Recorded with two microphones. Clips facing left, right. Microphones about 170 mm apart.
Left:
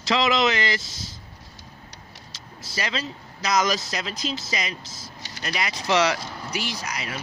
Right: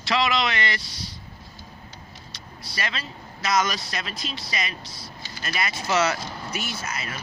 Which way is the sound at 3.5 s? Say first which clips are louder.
Left 1 dB; 20° left (ahead or behind).